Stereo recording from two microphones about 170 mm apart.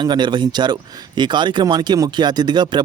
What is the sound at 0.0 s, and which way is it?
A man's voice, 25° right (ahead or behind).